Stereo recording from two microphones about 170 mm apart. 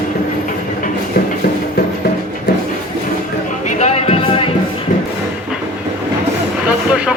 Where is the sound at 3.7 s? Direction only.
40° left (ahead or behind).